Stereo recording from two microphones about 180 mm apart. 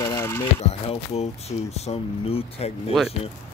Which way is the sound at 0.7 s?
35° left (ahead or behind).